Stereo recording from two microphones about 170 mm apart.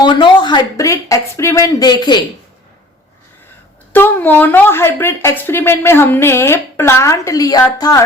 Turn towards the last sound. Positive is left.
turn(degrees=20)  # may be behind; listen again after turning